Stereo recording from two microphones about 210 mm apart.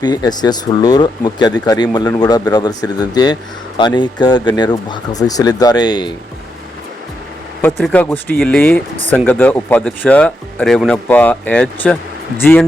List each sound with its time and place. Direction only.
0.0 s speech: 20° left (ahead or behind)
7.8 s speech: centre (ahead or behind)